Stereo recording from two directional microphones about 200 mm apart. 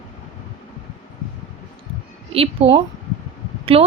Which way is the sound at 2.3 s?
30° right (ahead or behind).